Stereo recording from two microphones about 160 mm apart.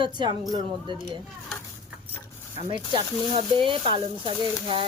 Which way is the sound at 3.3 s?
35° right (ahead or behind).